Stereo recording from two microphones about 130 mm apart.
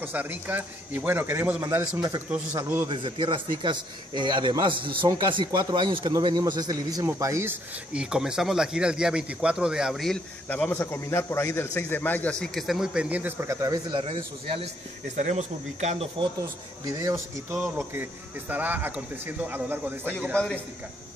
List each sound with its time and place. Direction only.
0.0 s speech: 15° right (ahead or behind)
2.0 s speech: 30° right (ahead or behind)
2.3 s speech: 15° right (ahead or behind)
2.9 s a man's voice: 40° right (ahead or behind); by 7.5 s 20° right (ahead or behind)
7.9 s speech: 5° right (ahead or behind)
10.5 s a man's voice: 15° left (ahead or behind); by 13.7 s 20° right (ahead or behind)
13.9 s speech: 45° right (ahead or behind)
15.1 s speech: 60° right (ahead or behind)
16.9 s speech: 20° right (ahead or behind)